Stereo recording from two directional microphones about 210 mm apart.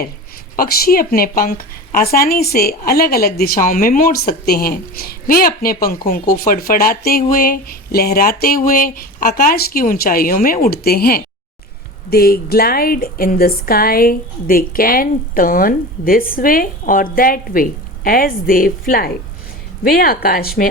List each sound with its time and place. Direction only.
0.5 s speech: 45° left (ahead or behind)